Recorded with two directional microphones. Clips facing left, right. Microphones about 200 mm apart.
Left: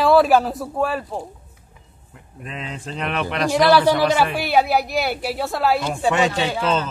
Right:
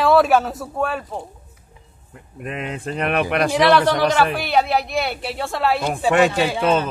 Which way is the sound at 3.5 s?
5° left (ahead or behind).